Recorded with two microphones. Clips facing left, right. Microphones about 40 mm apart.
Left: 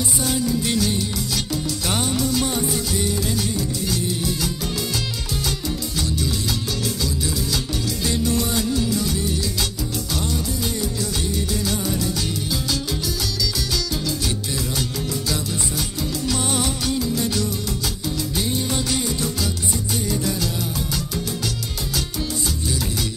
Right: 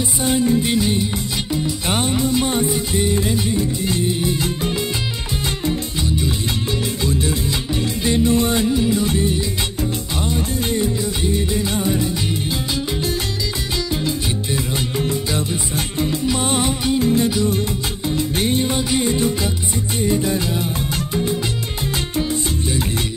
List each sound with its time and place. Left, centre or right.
0.2 s music: right
8.0 s music: right
15.0 s music: right
18.7 s music: right